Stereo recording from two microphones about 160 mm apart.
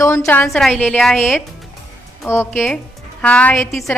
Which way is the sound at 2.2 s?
15° left (ahead or behind).